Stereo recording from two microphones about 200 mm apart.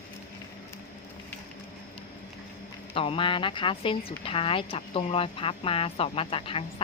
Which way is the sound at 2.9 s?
25° left (ahead or behind).